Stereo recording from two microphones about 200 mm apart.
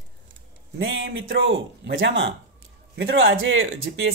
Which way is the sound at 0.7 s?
75° right (ahead or behind).